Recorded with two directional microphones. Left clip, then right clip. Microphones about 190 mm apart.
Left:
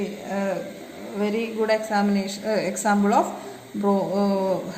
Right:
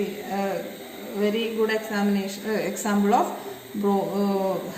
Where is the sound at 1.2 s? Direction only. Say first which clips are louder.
Right 1 dB; 55° left (ahead or behind).